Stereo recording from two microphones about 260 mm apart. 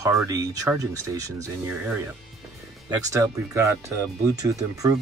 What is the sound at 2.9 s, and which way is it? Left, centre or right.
Speech, centre.